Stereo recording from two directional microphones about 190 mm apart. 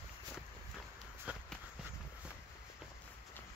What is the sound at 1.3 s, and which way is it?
Run, 5° right (ahead or behind).